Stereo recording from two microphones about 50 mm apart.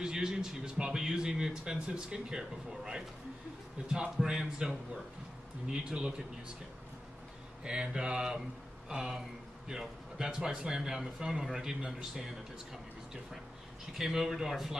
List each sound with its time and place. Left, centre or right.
0.0 s a man's voice: centre
7.6 s speech: centre
8.8 s a sound: centre
9.7 s speech: centre
13.9 s a man's voice: centre